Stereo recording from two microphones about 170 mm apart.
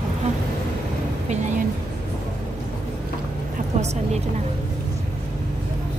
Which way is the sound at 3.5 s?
40° right (ahead or behind).